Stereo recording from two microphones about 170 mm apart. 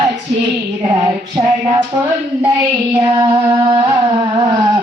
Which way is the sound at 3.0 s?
25° right (ahead or behind).